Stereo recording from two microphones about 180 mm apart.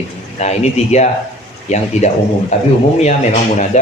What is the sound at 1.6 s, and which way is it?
A man's voice, 40° left (ahead or behind).